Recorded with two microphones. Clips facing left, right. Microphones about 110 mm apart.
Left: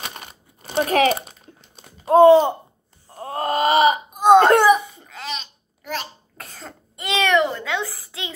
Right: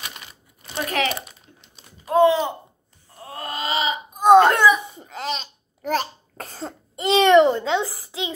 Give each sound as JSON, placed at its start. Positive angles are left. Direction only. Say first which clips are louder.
{"t": 0.0, "sound": "crumpling", "louder": "left 3 dB", "side_deg": 40}
{"t": 2.0, "sound": "a sound", "louder": "left 6 dB", "side_deg": 40}
{"t": 3.1, "sound": "wail", "louder": "left 9 dB", "side_deg": 40}
{"t": 4.9, "sound": "cough", "louder": "right 3 dB", "side_deg": -35}